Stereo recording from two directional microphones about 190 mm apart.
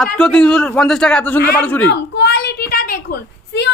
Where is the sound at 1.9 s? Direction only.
65° left (ahead or behind).